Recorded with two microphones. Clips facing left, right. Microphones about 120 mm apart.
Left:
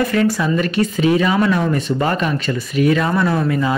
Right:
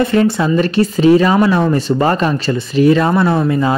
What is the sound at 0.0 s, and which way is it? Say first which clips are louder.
Speech: right 4 dB; 30° right (ahead or behind).